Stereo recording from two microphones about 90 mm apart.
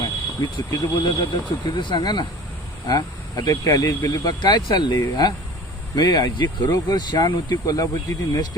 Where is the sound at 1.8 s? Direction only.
55° left (ahead or behind).